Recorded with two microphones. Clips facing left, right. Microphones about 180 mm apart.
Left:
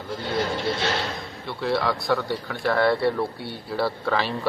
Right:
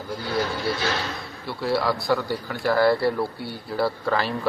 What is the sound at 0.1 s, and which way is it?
Vehicle, 25° left (ahead or behind).